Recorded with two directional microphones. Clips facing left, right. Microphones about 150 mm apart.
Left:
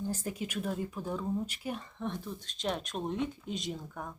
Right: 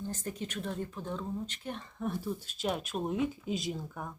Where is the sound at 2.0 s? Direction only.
10° right (ahead or behind).